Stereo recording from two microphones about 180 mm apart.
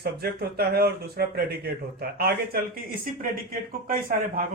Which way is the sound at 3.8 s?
50° right (ahead or behind).